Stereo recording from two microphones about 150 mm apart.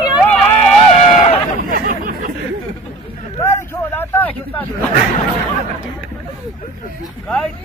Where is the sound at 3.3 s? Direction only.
15° left (ahead or behind).